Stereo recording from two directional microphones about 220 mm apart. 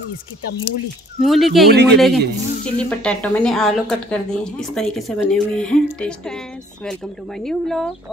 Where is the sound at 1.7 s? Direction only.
50° right (ahead or behind).